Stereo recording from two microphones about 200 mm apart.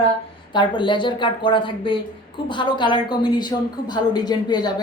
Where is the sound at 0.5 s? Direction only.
25° left (ahead or behind).